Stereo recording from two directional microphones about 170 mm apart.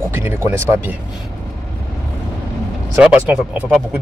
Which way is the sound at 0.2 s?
15° right (ahead or behind).